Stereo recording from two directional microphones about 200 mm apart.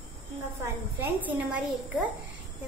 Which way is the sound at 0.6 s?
10° right (ahead or behind).